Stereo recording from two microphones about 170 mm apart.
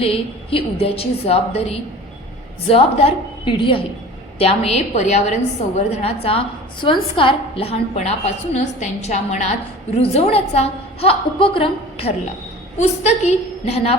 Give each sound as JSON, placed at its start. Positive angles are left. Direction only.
{"t": 0.0, "sound": "a woman's voice", "side_deg": 35}
{"t": 6.8, "sound": "a woman's voice", "side_deg": 30}